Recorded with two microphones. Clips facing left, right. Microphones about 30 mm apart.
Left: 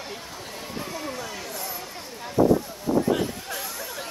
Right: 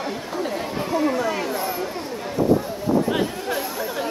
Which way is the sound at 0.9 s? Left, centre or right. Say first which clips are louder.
Right 16 dB; right.